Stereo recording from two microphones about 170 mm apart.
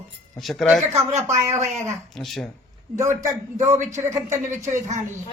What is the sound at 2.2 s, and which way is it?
Speech, centre (ahead or behind).